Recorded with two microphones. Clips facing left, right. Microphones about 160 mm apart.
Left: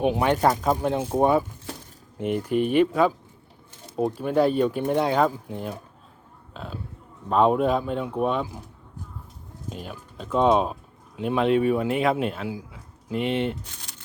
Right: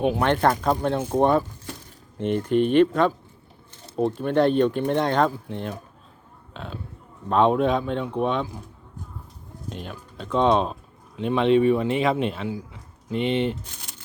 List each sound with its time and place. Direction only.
0.0 s a man's voice: 15° left (ahead or behind)
9.6 s speech: 5° left (ahead or behind)